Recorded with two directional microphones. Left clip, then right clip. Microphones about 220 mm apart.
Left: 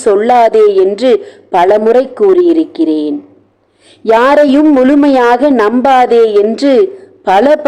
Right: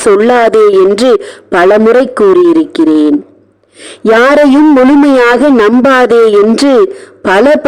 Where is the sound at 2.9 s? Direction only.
80° right.